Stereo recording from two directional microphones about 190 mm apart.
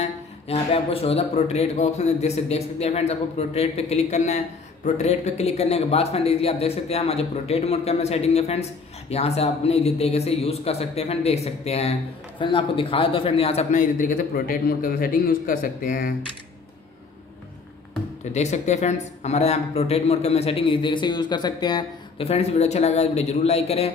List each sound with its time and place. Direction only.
0.0 s a man's voice: 30° left (ahead or behind); by 16.2 s 45° left (ahead or behind)
18.3 s speech: 35° left (ahead or behind); by 22.3 s 20° left (ahead or behind)
22.3 s speech: 35° left (ahead or behind)